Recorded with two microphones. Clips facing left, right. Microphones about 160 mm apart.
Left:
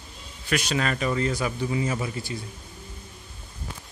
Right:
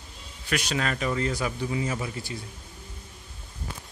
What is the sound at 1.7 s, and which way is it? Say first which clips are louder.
Speech: left 2 dB; 75° left (ahead or behind).